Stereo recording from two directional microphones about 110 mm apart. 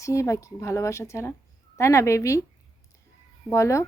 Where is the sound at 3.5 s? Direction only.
25° left (ahead or behind).